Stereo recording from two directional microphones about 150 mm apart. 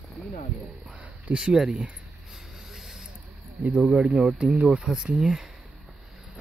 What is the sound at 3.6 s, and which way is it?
Speech, 10° right (ahead or behind).